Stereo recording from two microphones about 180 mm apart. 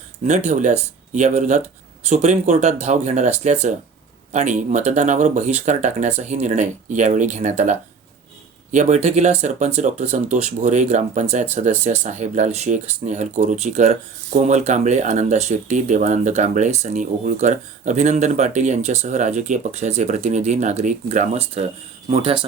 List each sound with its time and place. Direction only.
0.3 s speech: 40° right (ahead or behind)